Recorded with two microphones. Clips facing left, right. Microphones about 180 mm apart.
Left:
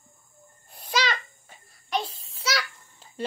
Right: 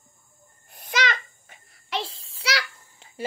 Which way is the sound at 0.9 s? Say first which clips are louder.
Even; 55° right (ahead or behind).